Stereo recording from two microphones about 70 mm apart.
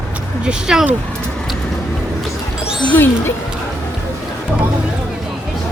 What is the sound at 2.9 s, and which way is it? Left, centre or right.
Speech, left.